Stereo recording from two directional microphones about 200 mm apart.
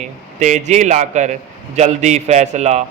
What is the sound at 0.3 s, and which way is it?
A man's voice, 35° right (ahead or behind).